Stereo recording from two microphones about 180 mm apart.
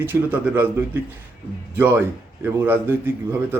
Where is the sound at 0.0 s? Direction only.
10° right (ahead or behind).